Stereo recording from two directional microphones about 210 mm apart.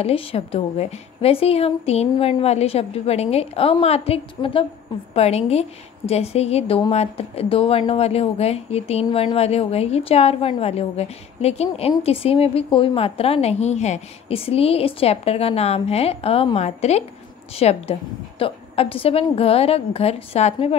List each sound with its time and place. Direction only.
0.0 s a woman's voice: 25° left (ahead or behind)